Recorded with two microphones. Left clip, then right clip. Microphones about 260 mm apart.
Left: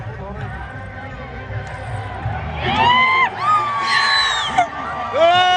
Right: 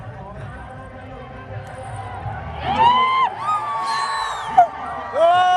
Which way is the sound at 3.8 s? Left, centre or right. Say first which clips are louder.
Left 6 dB; centre.